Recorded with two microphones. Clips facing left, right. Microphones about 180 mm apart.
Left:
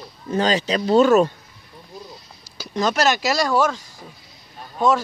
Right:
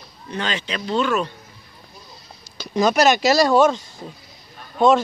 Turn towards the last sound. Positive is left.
turn(degrees=-25)  # may be behind; listen again after turning